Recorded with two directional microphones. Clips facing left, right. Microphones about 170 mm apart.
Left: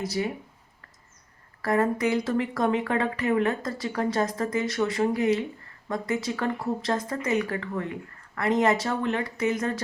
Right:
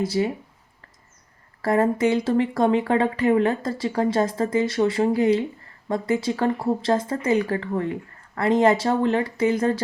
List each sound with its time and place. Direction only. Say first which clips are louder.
0.0 s speech: right 6 dB; 30° right (ahead or behind)
1.6 s speech: right 4 dB; 30° right (ahead or behind)